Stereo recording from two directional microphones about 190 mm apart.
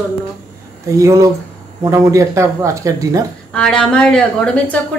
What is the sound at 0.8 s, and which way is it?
Speech, 15° right (ahead or behind).